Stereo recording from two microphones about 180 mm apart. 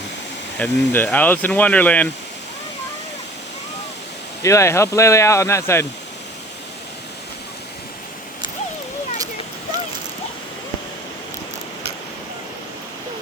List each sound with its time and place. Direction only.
0.6 s speech: 10° left (ahead or behind)
4.4 s speech: 15° left (ahead or behind)